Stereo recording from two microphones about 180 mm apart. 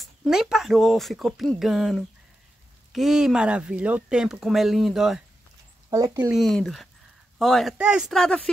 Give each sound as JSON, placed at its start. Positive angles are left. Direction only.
{"t": 0.0, "sound": "speech", "side_deg": 0}
{"t": 5.9, "sound": "speech", "side_deg": -20}
{"t": 6.3, "sound": "speech", "side_deg": 0}